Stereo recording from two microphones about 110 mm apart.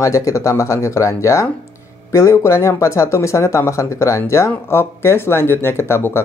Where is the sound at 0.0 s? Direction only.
30° left (ahead or behind).